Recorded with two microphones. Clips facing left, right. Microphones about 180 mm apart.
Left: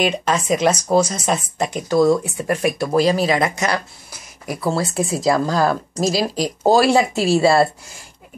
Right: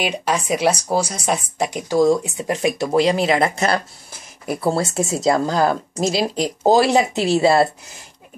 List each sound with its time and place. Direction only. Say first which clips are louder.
0.0 s speech: left 2 dB; 10° right (ahead or behind)